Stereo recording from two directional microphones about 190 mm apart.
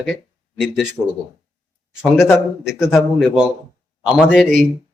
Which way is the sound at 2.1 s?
5° right (ahead or behind).